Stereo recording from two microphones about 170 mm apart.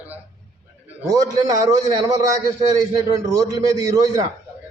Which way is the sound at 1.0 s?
20° right (ahead or behind).